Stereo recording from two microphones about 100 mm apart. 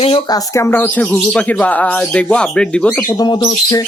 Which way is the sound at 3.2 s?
45° left (ahead or behind).